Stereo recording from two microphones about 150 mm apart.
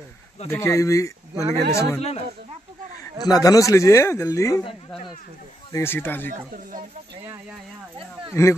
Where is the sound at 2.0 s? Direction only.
45° left (ahead or behind).